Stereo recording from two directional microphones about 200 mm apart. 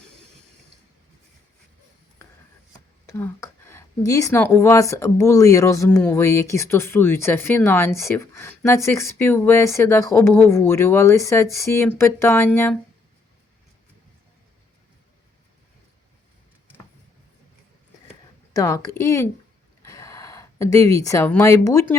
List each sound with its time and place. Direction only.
3.1 s speech: 15° left (ahead or behind)
18.5 s speech: 15° left (ahead or behind)